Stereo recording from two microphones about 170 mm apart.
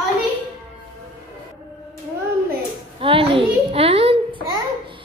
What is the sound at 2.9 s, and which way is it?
A child's voice, 35° right (ahead or behind).